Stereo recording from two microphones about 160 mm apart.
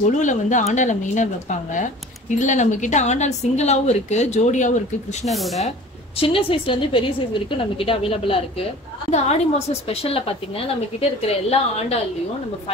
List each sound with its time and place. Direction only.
0.1 s speech: 50° left (ahead or behind)
5.3 s speech: centre (ahead or behind)
6.1 s a woman's voice: 35° left (ahead or behind)